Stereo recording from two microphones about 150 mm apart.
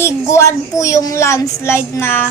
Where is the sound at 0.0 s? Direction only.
20° left (ahead or behind).